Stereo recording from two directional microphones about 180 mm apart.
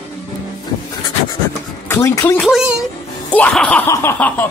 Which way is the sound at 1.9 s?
15° left (ahead or behind).